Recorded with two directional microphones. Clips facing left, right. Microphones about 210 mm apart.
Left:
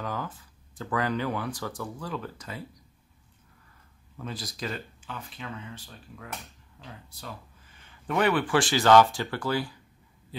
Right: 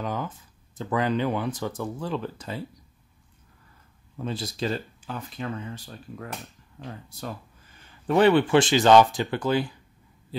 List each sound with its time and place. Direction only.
0.0 s speech: 20° right (ahead or behind)
4.2 s speech: 25° right (ahead or behind); by 7.3 s 45° right (ahead or behind)
8.1 s speech: 30° right (ahead or behind)